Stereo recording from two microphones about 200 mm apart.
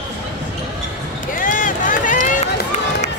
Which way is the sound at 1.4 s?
40° left (ahead or behind).